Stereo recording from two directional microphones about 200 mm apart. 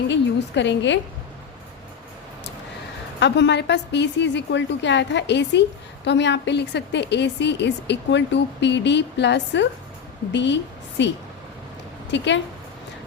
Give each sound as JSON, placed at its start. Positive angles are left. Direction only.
{"t": 0.1, "sound": "a woman's voice", "side_deg": 60}
{"t": 3.2, "sound": "a woman's voice", "side_deg": 60}
{"t": 12.1, "sound": "a woman's voice", "side_deg": 65}